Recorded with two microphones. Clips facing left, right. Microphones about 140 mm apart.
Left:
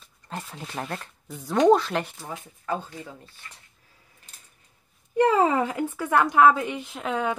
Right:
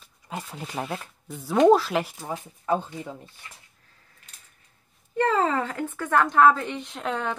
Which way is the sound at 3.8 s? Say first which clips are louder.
Left 1 dB; 10° left (ahead or behind).